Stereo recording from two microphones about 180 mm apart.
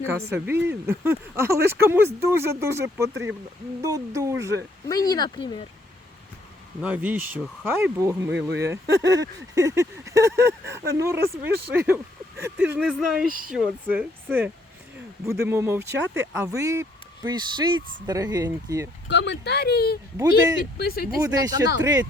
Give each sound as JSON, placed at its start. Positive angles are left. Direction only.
{"t": 0.0, "sound": "speech", "side_deg": -10}
{"t": 4.9, "sound": "speech", "side_deg": 20}
{"t": 6.8, "sound": "speech", "side_deg": -10}
{"t": 8.3, "sound": "speech", "side_deg": -80}
{"t": 8.6, "sound": "speech", "side_deg": -15}
{"t": 13.2, "sound": "speech", "side_deg": -50}
{"t": 13.5, "sound": "speech", "side_deg": -5}
{"t": 19.0, "sound": "speech", "side_deg": 75}
{"t": 21.2, "sound": "speech", "side_deg": -20}